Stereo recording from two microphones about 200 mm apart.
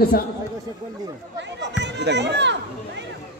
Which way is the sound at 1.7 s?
60° right (ahead or behind).